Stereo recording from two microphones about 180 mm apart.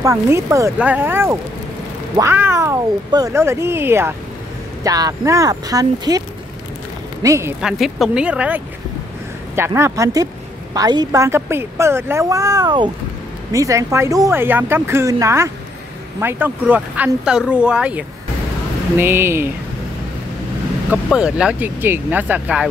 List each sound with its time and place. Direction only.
0.0 s a woman's voice: 15° right (ahead or behind)
7.2 s a woman's voice: 15° right (ahead or behind)
7.6 s a woman's voice: centre (ahead or behind)
20.9 s a woman's voice: 5° right (ahead or behind)